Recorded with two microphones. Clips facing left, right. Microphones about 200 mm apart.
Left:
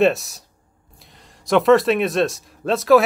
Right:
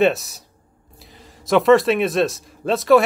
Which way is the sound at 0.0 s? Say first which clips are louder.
Even; centre (ahead or behind).